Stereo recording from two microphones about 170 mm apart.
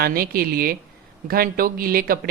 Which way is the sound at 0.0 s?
60° right (ahead or behind).